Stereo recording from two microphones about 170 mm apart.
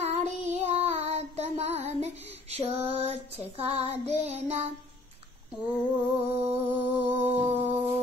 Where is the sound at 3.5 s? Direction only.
35° right (ahead or behind).